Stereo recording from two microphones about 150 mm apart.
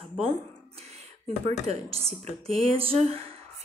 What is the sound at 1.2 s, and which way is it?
Speech, 45° right (ahead or behind).